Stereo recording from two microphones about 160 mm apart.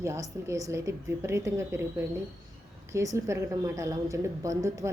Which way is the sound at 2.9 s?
20° right (ahead or behind).